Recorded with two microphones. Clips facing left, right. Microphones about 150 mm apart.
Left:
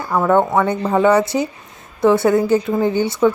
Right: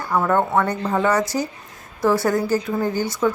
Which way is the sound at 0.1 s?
15° left (ahead or behind).